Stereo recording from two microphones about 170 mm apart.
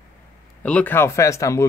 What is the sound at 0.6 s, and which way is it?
Speech, 10° left (ahead or behind).